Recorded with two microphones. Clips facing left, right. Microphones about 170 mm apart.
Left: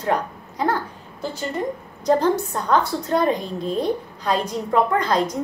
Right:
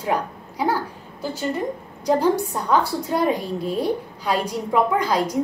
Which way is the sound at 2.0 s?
10° right (ahead or behind).